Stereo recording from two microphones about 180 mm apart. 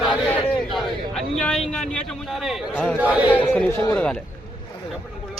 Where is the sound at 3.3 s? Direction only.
10° left (ahead or behind).